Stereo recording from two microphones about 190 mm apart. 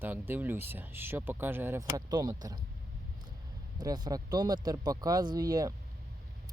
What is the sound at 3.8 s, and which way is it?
Speech, 20° right (ahead or behind).